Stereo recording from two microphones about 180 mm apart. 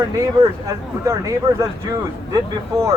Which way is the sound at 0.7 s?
15° right (ahead or behind).